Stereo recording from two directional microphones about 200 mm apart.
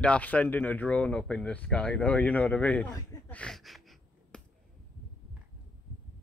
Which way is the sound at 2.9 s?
5° left (ahead or behind).